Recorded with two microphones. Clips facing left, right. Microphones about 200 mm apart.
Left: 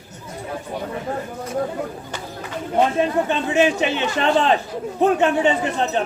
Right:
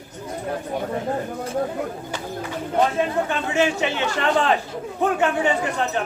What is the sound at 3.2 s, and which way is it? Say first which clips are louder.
A man's voice: left 3 dB; 20° left (ahead or behind).